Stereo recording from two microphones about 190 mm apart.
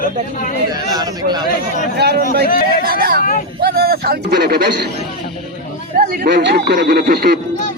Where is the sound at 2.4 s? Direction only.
55° left (ahead or behind).